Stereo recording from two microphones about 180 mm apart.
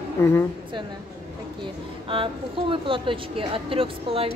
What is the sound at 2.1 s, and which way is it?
A woman's voice, 30° right (ahead or behind).